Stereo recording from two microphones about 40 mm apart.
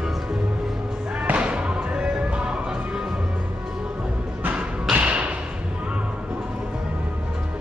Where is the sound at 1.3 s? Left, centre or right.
Right.